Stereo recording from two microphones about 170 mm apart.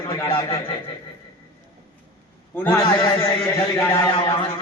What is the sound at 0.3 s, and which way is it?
Speech, 30° left (ahead or behind).